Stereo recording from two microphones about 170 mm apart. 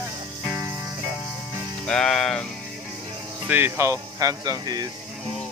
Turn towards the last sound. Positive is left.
turn(degrees=-25)  # may be behind; listen again after turning